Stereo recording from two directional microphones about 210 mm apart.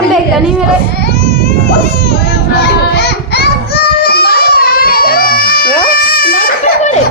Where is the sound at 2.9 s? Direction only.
50° left (ahead or behind).